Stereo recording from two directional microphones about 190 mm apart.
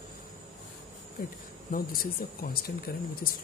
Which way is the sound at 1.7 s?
50° left (ahead or behind).